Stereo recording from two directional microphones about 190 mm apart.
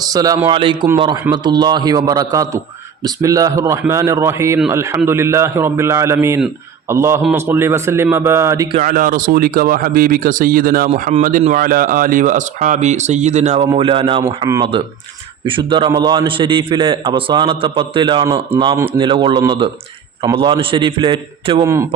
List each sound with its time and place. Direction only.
0.1 s a man's voice: 20° right (ahead or behind)
8.8 s a man's voice: 45° right (ahead or behind); by 21.6 s 30° right (ahead or behind)
21.6 s a man's voice: 15° right (ahead or behind)